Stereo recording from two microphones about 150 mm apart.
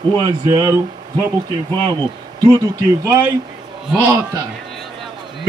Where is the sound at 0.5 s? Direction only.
25° right (ahead or behind).